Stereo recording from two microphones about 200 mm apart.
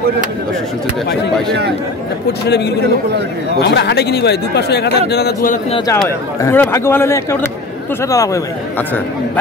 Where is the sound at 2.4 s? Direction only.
55° left (ahead or behind).